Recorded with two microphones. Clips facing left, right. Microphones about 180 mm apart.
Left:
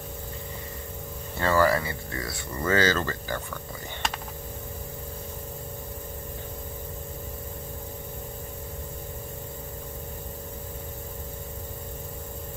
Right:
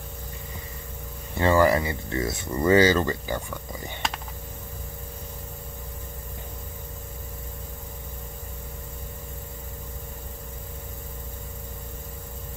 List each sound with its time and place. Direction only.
1.4 s speech: 20° right (ahead or behind)